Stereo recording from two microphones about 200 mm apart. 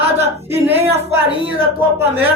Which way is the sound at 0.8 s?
30° right (ahead or behind).